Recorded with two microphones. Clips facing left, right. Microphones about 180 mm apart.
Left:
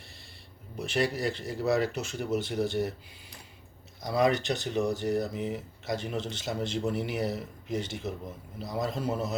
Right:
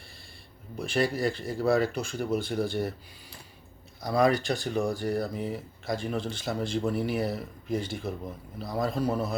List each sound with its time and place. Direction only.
0.8 s a man's voice: 25° left (ahead or behind)
2.7 s speech: 30° right (ahead or behind)
4.2 s a man's voice: 20° left (ahead or behind)